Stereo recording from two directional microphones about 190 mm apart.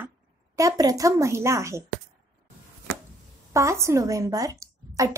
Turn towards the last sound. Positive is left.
turn(degrees=-15)  # may be behind; listen again after turning